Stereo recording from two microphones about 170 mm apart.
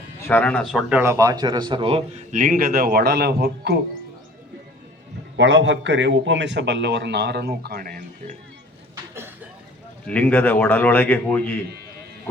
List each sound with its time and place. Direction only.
0.3 s speech: 10° left (ahead or behind); by 2.2 s 35° right (ahead or behind)
2.3 s a man's voice: 50° right (ahead or behind); by 3.8 s 75° right (ahead or behind)
5.4 s a man's voice: 90° right; by 8.4 s 60° right (ahead or behind)
10.1 s a man's voice: 10° left (ahead or behind)